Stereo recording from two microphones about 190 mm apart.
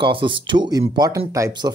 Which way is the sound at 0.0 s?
25° right (ahead or behind).